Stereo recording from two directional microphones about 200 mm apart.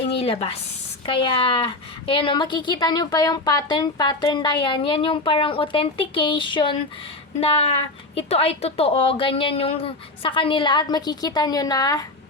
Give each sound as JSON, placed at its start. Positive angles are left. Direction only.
{"t": 0.2, "sound": "a woman's voice", "side_deg": 30}
{"t": 8.1, "sound": "a woman's voice", "side_deg": 30}